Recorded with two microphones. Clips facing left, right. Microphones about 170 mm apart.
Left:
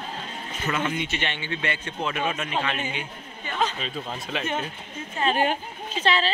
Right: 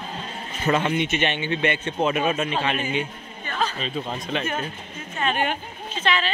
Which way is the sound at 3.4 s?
15° left (ahead or behind).